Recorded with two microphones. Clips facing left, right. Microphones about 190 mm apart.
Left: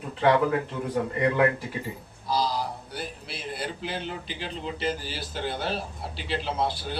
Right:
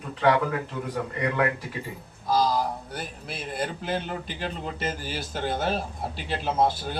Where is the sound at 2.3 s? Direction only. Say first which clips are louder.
Right 4 dB; 45° right (ahead or behind).